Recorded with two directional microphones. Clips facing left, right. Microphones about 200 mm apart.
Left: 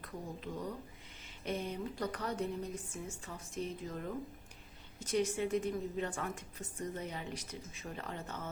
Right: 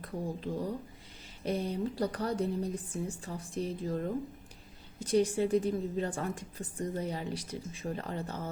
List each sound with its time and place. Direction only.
0.0 s a woman's voice: 35° right (ahead or behind)